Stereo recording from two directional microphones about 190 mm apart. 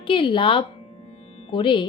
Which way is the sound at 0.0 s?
25° left (ahead or behind).